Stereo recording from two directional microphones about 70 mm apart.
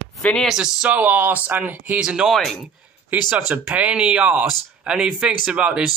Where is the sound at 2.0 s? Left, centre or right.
Centre.